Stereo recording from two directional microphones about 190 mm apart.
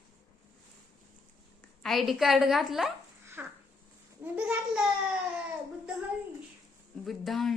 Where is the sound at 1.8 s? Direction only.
Centre (ahead or behind).